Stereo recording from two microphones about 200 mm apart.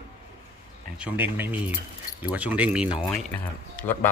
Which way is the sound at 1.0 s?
10° right (ahead or behind).